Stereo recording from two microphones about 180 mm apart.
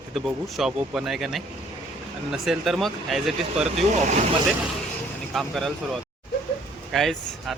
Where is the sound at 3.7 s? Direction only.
40° right (ahead or behind).